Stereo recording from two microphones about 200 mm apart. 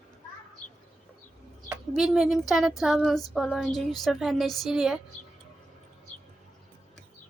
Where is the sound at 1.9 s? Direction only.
Centre (ahead or behind).